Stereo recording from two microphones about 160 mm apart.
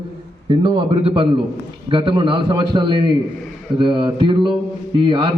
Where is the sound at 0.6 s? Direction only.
35° right (ahead or behind).